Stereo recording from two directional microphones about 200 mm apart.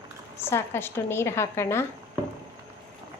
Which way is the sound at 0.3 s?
10° left (ahead or behind).